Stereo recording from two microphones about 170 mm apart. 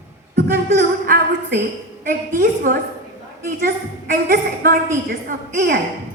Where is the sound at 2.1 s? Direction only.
55° right (ahead or behind).